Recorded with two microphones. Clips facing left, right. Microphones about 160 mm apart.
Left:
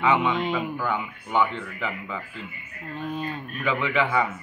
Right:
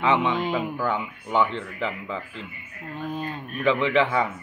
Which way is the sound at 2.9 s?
5° right (ahead or behind).